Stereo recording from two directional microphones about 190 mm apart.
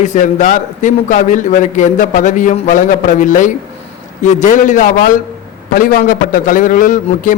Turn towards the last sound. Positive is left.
turn(degrees=45)  # may be behind; listen again after turning